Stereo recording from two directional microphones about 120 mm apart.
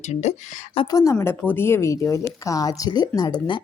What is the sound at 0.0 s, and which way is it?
Speech, 75° left (ahead or behind).